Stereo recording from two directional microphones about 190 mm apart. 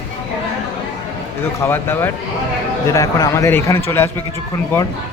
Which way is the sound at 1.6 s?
10° left (ahead or behind).